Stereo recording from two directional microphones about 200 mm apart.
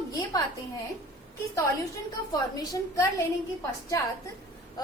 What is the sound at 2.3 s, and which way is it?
Speech, 20° left (ahead or behind).